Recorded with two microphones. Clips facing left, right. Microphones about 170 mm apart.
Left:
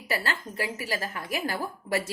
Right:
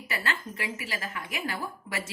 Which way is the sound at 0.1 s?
35° left (ahead or behind).